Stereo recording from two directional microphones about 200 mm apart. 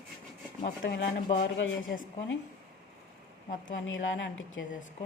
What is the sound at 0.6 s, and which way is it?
Speech, 55° left (ahead or behind).